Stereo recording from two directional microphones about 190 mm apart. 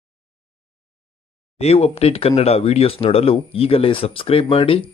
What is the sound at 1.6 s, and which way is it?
Speech, 35° left (ahead or behind).